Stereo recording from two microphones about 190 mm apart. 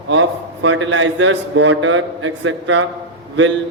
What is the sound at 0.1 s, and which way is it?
A man's voice, 85° right.